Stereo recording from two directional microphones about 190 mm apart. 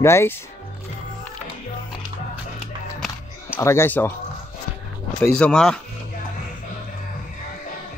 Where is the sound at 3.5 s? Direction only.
15° left (ahead or behind).